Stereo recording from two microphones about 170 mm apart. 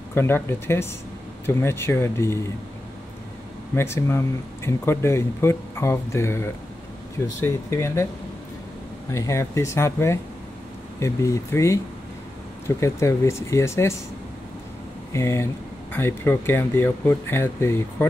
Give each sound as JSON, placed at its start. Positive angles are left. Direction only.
{"t": 0.1, "sound": "speech", "side_deg": 15}
{"t": 3.7, "sound": "speech", "side_deg": 15}
{"t": 7.4, "sound": "speech", "side_deg": 15}
{"t": 9.1, "sound": "speech", "side_deg": 15}
{"t": 15.1, "sound": "speech", "side_deg": 15}